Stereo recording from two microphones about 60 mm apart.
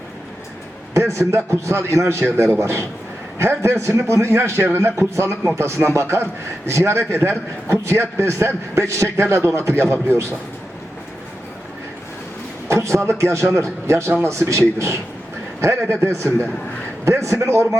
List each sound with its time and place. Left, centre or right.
1.1 s a man's voice: right
2.2 s a man's voice: right
12.6 s a sound: right
13.1 s a man's voice: right
17.1 s a man's voice: right